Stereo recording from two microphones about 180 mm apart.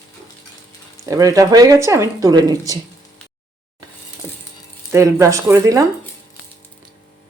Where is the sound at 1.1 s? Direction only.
20° right (ahead or behind).